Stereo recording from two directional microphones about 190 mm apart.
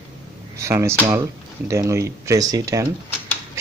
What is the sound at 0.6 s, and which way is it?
Speech, 15° right (ahead or behind).